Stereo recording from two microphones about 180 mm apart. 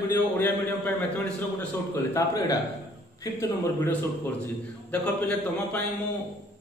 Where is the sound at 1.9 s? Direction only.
15° left (ahead or behind).